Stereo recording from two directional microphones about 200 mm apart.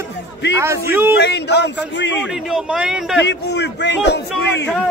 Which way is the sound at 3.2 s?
60° left (ahead or behind).